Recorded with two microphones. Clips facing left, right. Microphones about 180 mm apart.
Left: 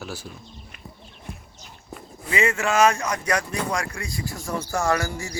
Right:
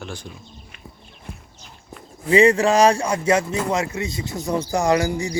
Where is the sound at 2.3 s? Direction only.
35° right (ahead or behind).